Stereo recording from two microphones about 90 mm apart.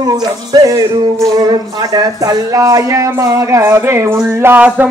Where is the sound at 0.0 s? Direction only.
45° right (ahead or behind).